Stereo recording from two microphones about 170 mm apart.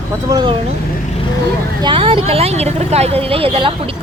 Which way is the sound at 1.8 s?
30° right (ahead or behind).